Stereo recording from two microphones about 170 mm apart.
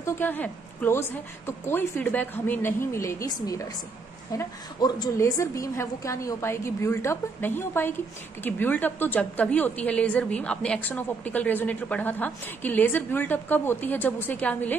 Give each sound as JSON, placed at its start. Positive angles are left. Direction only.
{"t": 0.0, "sound": "a woman's voice", "side_deg": 10}